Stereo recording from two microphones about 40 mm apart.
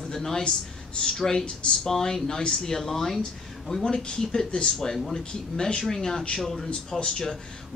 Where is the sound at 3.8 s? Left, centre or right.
Centre.